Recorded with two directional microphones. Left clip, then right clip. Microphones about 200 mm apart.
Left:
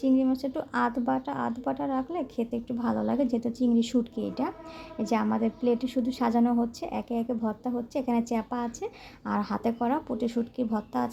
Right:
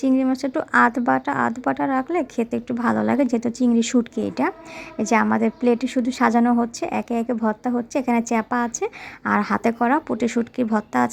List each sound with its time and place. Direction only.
0.0 s a woman's voice: 15° right (ahead or behind)